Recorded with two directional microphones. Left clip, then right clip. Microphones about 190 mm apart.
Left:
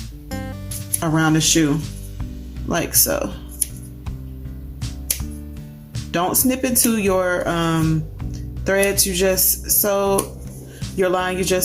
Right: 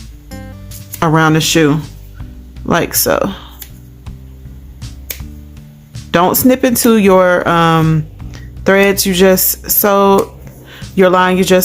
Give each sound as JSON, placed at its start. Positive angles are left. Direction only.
{"t": 0.3, "sound": "music", "side_deg": 0}
{"t": 0.9, "sound": "speech", "side_deg": -45}
{"t": 6.1, "sound": "speech", "side_deg": -45}